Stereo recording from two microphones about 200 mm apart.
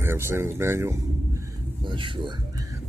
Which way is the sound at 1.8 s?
25° right (ahead or behind).